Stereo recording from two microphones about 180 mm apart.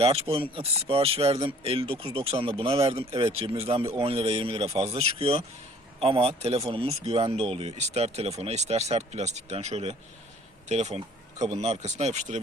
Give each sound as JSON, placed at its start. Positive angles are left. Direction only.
{"t": 0.0, "sound": "speech", "side_deg": -35}